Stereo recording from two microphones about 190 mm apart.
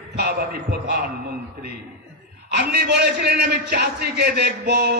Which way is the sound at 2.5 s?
60° right (ahead or behind).